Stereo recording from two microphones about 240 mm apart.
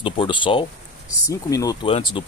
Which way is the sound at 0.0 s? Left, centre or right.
Left.